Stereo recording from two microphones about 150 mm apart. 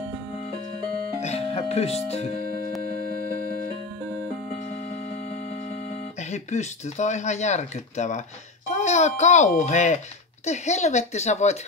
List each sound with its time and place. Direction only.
1.2 s speech: 45° left (ahead or behind)
6.3 s a child's voice: 50° left (ahead or behind)